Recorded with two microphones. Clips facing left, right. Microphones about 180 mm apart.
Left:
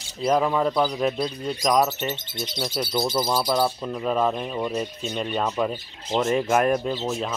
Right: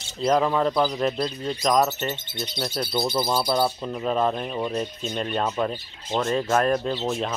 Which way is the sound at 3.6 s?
5° right (ahead or behind).